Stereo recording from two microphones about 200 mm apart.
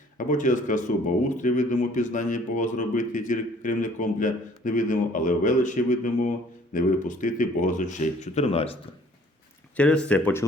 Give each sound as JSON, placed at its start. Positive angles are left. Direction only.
{"t": 0.2, "sound": "speech", "side_deg": 40}
{"t": 9.7, "sound": "speech", "side_deg": 5}